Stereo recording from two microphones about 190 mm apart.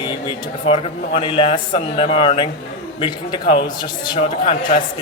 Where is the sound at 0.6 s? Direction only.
30° left (ahead or behind).